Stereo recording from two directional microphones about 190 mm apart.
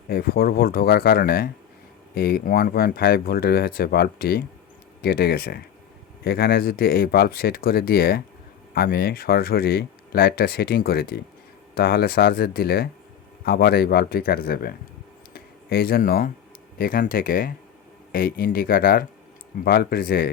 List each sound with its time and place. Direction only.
0.1 s speech: 55° left (ahead or behind)
15.3 s a sound: 55° left (ahead or behind)
16.7 s speech: 50° left (ahead or behind)